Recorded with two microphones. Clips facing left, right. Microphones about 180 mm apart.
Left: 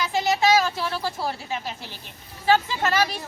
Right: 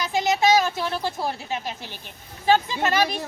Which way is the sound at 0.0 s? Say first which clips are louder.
Right 1 dB; 20° right (ahead or behind).